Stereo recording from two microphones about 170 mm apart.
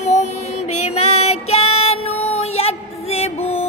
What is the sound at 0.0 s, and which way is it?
Female singing, 40° left (ahead or behind).